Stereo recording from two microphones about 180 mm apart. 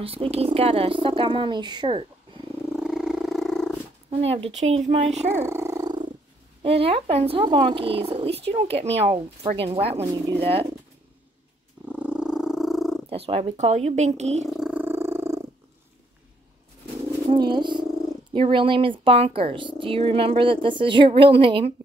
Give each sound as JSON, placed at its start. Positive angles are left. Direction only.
{"t": 0.0, "sound": "speech", "side_deg": -30}
{"t": 2.7, "sound": "cat", "side_deg": -5}
{"t": 4.1, "sound": "speech", "side_deg": -35}
{"t": 5.3, "sound": "purr", "side_deg": -15}
{"t": 6.6, "sound": "speech", "side_deg": -30}
{"t": 11.8, "sound": "purr", "side_deg": -5}
{"t": 13.1, "sound": "speech", "side_deg": -35}
{"t": 14.5, "sound": "purr", "side_deg": -5}
{"t": 17.3, "sound": "speech", "side_deg": -25}